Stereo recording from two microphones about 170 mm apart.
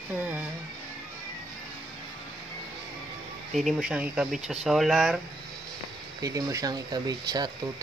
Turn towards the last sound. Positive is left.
turn(degrees=-25)  # may be behind; listen again after turning